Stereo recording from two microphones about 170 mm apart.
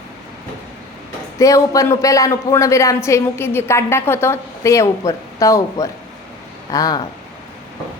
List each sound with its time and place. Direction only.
1.4 s a woman's voice: 20° left (ahead or behind)